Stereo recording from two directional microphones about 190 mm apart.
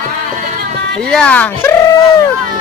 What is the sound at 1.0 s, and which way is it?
Speech, 5° left (ahead or behind).